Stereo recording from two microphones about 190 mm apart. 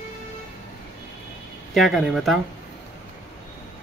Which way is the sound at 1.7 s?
Centre (ahead or behind).